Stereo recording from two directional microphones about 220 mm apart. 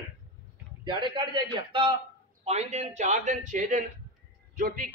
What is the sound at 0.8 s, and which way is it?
A man's voice, 20° right (ahead or behind).